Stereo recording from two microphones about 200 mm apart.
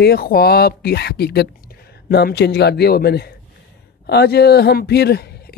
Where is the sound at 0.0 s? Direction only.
50° left (ahead or behind).